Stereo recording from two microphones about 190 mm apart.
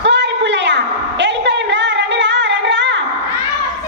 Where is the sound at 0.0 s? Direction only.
65° right (ahead or behind).